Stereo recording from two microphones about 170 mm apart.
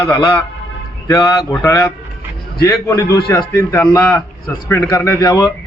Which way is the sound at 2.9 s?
20° left (ahead or behind).